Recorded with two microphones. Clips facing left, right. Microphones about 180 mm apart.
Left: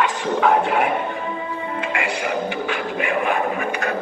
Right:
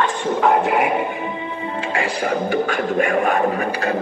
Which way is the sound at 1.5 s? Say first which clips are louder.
Right 1 dB; 25° right (ahead or behind).